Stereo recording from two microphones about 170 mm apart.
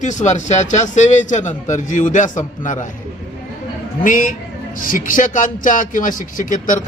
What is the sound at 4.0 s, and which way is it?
Speech, 50° left (ahead or behind).